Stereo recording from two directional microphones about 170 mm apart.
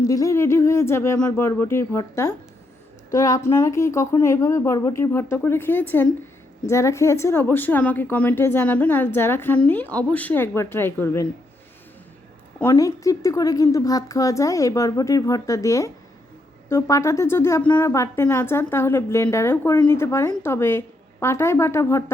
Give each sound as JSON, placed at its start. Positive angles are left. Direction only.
{"t": 0.0, "sound": "a woman's voice", "side_deg": 20}
{"t": 12.5, "sound": "a woman's voice", "side_deg": 15}